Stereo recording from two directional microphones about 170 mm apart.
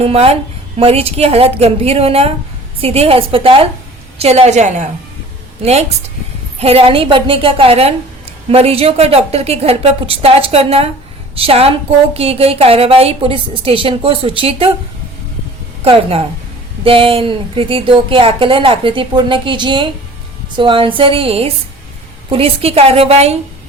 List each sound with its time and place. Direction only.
0.0 s a woman's voice: 35° right (ahead or behind)
6.6 s a woman's voice: 35° right (ahead or behind)
15.8 s a woman's voice: 35° right (ahead or behind)